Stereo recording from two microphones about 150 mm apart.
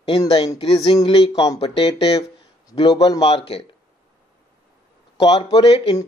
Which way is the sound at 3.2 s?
40° left (ahead or behind).